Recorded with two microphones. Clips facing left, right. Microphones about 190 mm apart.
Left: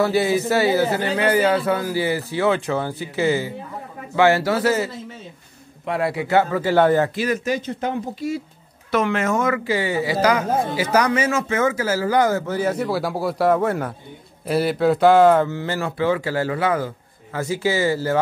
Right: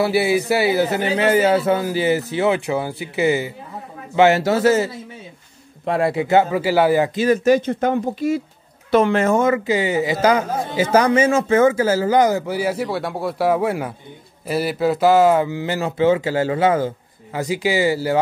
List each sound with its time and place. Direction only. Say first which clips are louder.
0.0 s speech: right 1 dB; 10° right (ahead or behind)
1.1 s speech: right 3 dB; 25° right (ahead or behind); by 7.1 s 10° right (ahead or behind)
7.4 s speech: right 8 dB; 50° right (ahead or behind)
8.9 s speech: right 5 dB; 30° right (ahead or behind); by 18.2 s 15° right (ahead or behind)